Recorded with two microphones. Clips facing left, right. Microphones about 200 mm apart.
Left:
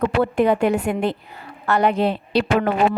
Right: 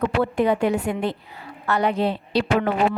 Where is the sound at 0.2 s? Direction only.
50° left (ahead or behind); by 2.9 s 70° left (ahead or behind).